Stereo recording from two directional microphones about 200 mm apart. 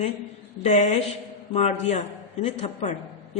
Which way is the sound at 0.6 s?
35° left (ahead or behind).